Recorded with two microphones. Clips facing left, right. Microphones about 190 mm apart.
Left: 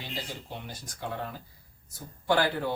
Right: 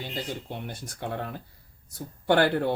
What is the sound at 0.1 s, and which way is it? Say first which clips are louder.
Speech: right 4 dB; 55° right (ahead or behind).